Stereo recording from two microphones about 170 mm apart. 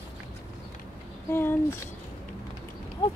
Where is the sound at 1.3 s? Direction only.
15° left (ahead or behind).